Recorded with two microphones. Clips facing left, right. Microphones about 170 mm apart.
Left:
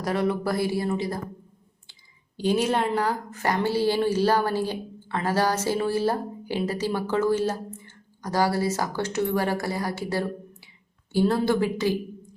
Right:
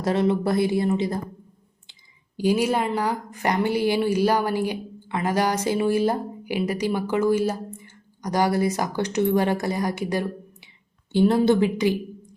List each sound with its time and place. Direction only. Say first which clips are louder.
0.0 s a woman's voice: right 3 dB; 25° right (ahead or behind)